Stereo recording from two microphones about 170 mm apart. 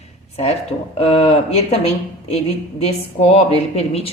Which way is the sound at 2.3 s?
35° left (ahead or behind).